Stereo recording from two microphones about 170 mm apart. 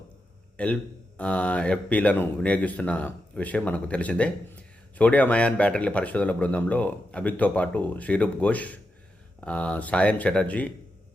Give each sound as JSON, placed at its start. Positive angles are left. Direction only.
{"t": 0.5, "sound": "speech", "side_deg": 10}